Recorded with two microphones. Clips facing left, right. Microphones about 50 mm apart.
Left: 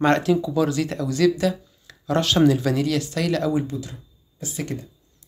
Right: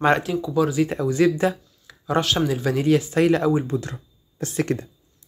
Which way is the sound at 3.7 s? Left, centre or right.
Right.